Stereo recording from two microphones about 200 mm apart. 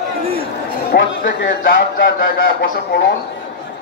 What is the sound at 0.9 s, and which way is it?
Speech, 65° left (ahead or behind).